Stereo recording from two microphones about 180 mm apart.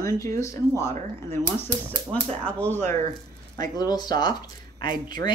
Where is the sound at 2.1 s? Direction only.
5° left (ahead or behind).